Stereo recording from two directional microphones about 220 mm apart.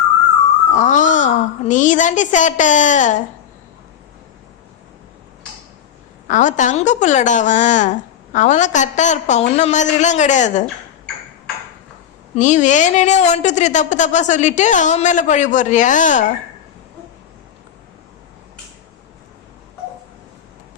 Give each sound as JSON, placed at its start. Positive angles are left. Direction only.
{"t": 0.7, "sound": "a woman's voice", "side_deg": 35}
{"t": 6.2, "sound": "a woman's voice", "side_deg": 35}
{"t": 12.3, "sound": "a woman's voice", "side_deg": 35}